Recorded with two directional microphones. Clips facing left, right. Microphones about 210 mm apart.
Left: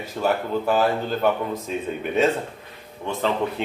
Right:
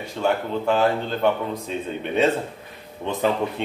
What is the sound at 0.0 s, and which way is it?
Speech, 5° left (ahead or behind).